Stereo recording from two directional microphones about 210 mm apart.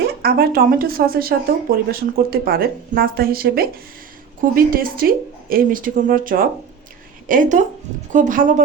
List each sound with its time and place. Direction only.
0.2 s speech: 45° right (ahead or behind)